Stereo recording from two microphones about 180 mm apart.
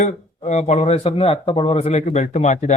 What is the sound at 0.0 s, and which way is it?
Speech, 40° left (ahead or behind).